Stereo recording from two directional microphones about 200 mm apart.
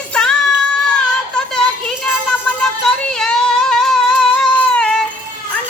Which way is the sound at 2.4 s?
5° left (ahead or behind).